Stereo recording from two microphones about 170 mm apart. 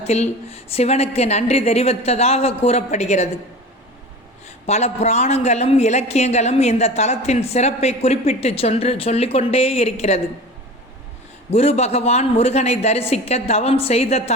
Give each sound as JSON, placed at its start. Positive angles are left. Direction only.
{"t": 0.0, "sound": "a man's voice", "side_deg": 40}
{"t": 4.6, "sound": "a man's voice", "side_deg": 40}
{"t": 11.5, "sound": "a man's voice", "side_deg": 35}